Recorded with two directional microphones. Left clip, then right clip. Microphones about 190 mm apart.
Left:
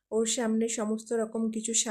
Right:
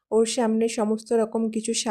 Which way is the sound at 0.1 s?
25° right (ahead or behind).